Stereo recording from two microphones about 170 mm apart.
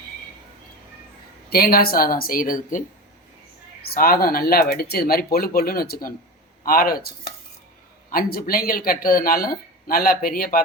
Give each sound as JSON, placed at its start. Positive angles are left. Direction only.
{"t": 1.5, "sound": "speech", "side_deg": 60}
{"t": 3.9, "sound": "speech", "side_deg": 60}